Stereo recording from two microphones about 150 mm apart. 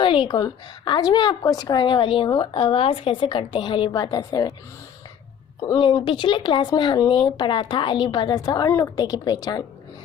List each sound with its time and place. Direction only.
0.0 s a woman's voice: 35° left (ahead or behind)
5.6 s a woman's voice: 25° left (ahead or behind)